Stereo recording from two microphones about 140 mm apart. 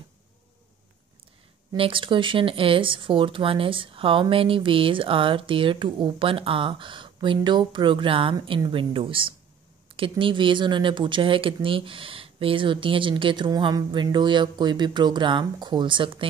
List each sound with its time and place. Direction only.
1.8 s speech: 40° right (ahead or behind)